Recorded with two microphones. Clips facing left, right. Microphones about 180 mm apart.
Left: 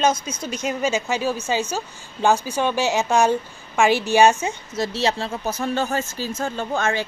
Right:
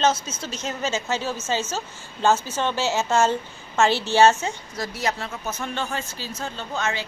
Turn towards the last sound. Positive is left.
turn(degrees=50)  # may be behind; listen again after turning